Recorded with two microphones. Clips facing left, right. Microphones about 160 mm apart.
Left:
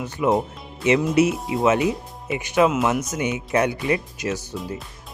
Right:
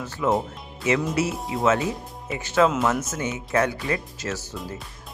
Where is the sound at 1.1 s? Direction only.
20° left (ahead or behind).